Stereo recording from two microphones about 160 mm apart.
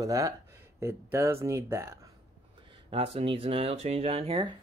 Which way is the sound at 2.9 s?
35° right (ahead or behind).